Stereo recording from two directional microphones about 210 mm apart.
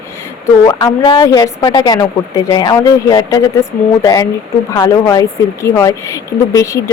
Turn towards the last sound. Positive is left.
turn(degrees=15)  # may be behind; listen again after turning